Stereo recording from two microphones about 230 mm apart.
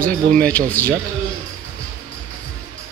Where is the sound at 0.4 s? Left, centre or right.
Centre.